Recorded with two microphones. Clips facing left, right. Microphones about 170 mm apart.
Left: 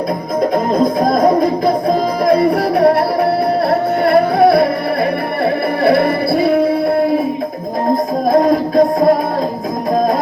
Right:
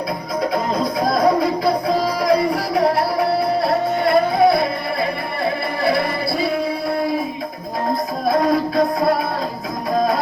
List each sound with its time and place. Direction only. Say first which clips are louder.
0.5 s music: left 7 dB; 50° left (ahead or behind); by 4.7 s 65° left (ahead or behind)
5.8 s music: left 7 dB; 60° left (ahead or behind)
8.3 s music: left 5 dB; 45° left (ahead or behind)